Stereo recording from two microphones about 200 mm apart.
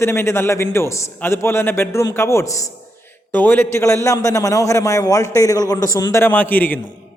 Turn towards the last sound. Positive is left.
turn(degrees=10)  # may be behind; listen again after turning